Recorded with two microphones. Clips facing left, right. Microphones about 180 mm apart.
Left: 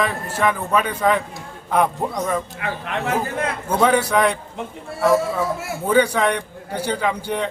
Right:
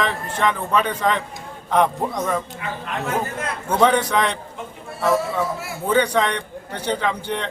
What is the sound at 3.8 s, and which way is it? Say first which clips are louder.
Speech: left 1 dB; 10° left (ahead or behind).